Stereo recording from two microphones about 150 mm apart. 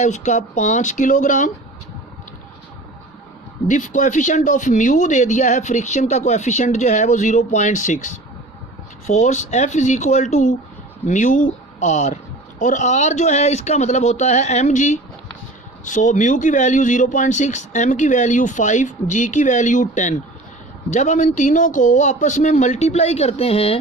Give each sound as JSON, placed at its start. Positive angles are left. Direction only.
{"t": 0.0, "sound": "speech", "side_deg": 50}
{"t": 3.7, "sound": "speech", "side_deg": 60}